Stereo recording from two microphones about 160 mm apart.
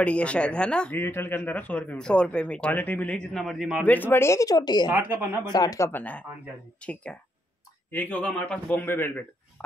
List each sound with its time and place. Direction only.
0.0 s speech: 5° left (ahead or behind)
3.8 s speech: 10° left (ahead or behind); by 4.9 s 25° left (ahead or behind)
4.9 s speech: 10° right (ahead or behind)
5.4 s speech: 25° left (ahead or behind)